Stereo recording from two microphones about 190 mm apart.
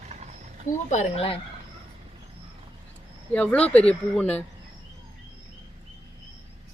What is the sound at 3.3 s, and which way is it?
A woman's voice, 5° left (ahead or behind).